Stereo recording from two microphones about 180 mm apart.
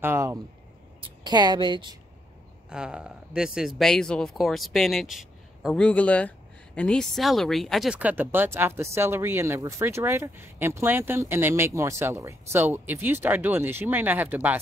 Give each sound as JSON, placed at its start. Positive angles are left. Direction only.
{"t": 0.0, "sound": "a woman's voice", "side_deg": -15}
{"t": 2.7, "sound": "speech", "side_deg": -5}